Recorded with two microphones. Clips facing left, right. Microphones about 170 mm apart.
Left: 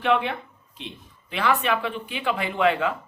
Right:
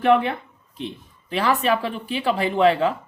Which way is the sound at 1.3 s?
35° right (ahead or behind).